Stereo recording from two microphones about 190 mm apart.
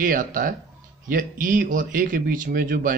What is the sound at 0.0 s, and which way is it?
A man's voice, 45° right (ahead or behind).